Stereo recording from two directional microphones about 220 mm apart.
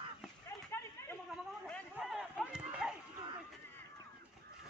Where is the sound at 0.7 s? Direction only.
10° left (ahead or behind).